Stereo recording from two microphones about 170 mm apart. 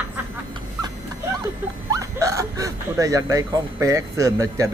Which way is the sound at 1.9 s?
20° right (ahead or behind).